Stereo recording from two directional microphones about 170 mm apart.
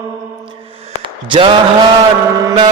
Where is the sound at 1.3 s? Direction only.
30° right (ahead or behind).